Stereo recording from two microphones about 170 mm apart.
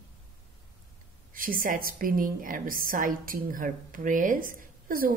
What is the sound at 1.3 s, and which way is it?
A woman's voice, 55° right (ahead or behind).